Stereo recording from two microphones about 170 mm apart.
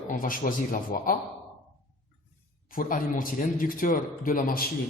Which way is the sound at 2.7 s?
55° left (ahead or behind).